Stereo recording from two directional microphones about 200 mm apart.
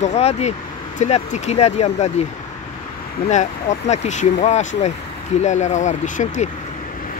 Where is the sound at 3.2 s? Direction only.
35° left (ahead or behind).